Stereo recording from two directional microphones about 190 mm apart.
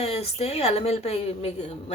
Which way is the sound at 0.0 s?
35° left (ahead or behind).